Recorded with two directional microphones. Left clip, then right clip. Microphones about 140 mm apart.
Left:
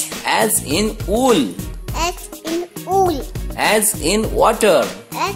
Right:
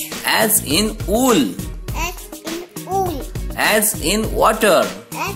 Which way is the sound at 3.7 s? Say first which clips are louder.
Left 1 dB; 15° left (ahead or behind).